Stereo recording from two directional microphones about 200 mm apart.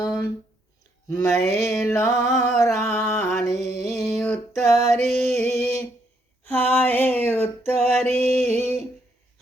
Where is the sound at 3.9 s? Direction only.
Centre (ahead or behind).